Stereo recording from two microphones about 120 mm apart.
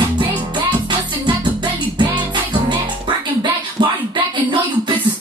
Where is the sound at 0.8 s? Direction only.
40° right (ahead or behind).